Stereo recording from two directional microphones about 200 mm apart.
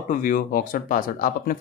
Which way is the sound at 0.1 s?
45° left (ahead or behind).